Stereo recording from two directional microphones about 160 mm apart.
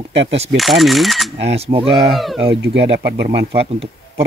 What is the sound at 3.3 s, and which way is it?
Speech, 35° right (ahead or behind).